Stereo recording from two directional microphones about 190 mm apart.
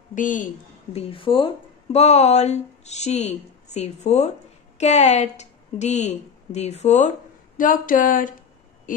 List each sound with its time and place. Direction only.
0.1 s speech: 45° left (ahead or behind)
0.9 s speech: 25° left (ahead or behind); by 8.4 s 45° left (ahead or behind)